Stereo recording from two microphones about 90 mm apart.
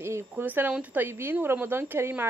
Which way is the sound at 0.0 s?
30° right (ahead or behind).